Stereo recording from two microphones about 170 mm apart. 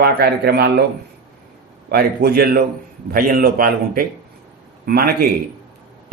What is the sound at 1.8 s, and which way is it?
A man's voice, 70° right (ahead or behind).